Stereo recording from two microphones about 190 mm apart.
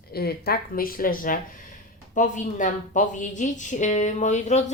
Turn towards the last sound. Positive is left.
turn(degrees=35)  # may be behind; listen again after turning